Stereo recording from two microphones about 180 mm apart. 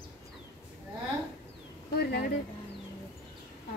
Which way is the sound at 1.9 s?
60° left (ahead or behind).